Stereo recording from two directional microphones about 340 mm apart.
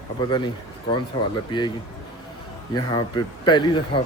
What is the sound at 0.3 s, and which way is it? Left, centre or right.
A man's voice, centre.